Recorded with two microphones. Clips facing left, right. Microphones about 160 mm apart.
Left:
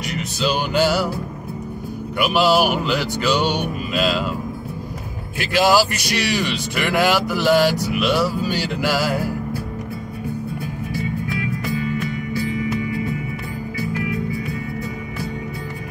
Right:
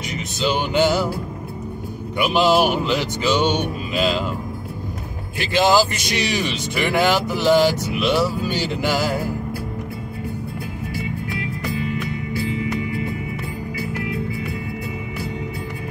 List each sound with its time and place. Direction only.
0.1 s speech: 20° right (ahead or behind)
2.2 s speech: 20° right (ahead or behind)
5.4 s speech: 20° right (ahead or behind)